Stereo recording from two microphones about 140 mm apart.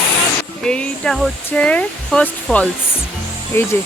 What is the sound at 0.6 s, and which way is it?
Speech, 5° left (ahead or behind).